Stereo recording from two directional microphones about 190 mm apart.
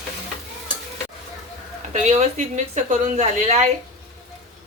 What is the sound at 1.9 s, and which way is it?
A woman's voice, 35° right (ahead or behind).